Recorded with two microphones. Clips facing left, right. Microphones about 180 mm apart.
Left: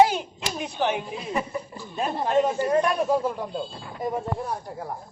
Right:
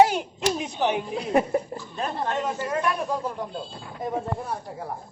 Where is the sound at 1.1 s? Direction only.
60° right (ahead or behind).